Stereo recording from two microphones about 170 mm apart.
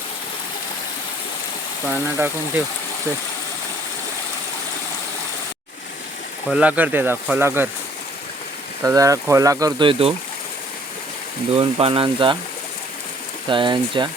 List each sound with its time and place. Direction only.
1.9 s speech: 10° right (ahead or behind)
6.5 s speech: 10° right (ahead or behind)
8.8 s speech: 20° right (ahead or behind)
11.5 s speech: 35° right (ahead or behind)
13.5 s speech: 30° right (ahead or behind)